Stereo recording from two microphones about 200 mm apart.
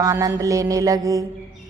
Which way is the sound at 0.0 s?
15° right (ahead or behind).